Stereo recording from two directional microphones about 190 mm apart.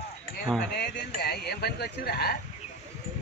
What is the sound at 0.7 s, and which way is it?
Speech, 60° left (ahead or behind).